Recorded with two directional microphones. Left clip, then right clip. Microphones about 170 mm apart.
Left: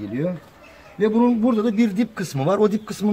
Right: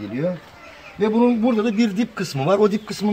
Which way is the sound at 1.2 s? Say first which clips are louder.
Right 3 dB; centre (ahead or behind).